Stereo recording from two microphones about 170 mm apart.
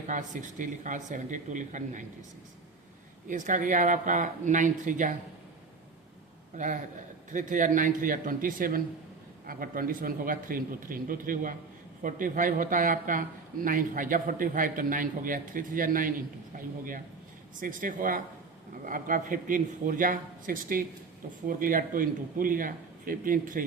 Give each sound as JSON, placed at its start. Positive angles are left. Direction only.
{"t": 0.1, "sound": "speech", "side_deg": -50}
{"t": 3.2, "sound": "speech", "side_deg": -50}
{"t": 6.6, "sound": "a man's voice", "side_deg": -50}